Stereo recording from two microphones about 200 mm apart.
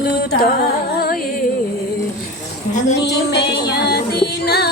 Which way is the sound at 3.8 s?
50° left (ahead or behind).